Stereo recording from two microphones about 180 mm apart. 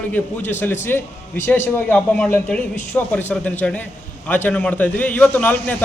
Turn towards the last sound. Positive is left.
turn(degrees=10)  # may be behind; listen again after turning